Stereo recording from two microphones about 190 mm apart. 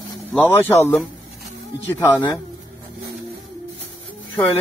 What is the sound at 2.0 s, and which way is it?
Speech, 20° left (ahead or behind).